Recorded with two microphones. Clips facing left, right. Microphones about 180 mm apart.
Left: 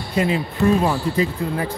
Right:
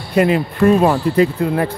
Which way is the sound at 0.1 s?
60° right (ahead or behind).